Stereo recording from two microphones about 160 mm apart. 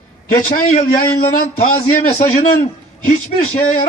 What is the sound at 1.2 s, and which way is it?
A man's voice, 55° left (ahead or behind).